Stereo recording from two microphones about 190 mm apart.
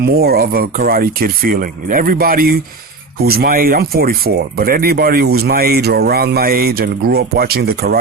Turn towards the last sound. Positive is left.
turn(degrees=-55)  # may be behind; listen again after turning